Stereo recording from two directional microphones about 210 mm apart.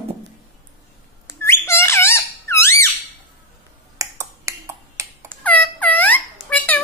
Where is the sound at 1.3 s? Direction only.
10° left (ahead or behind).